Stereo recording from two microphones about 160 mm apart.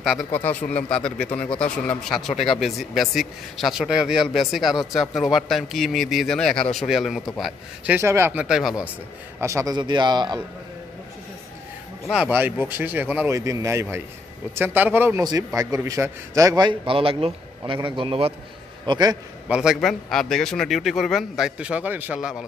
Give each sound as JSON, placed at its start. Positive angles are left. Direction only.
{"t": 0.0, "sound": "speech", "side_deg": 0}
{"t": 9.4, "sound": "a man's voice", "side_deg": -20}
{"t": 12.1, "sound": "a man's voice", "side_deg": -10}
{"t": 19.4, "sound": "speech", "side_deg": -5}